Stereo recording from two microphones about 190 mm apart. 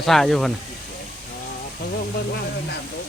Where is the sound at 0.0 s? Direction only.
Centre (ahead or behind).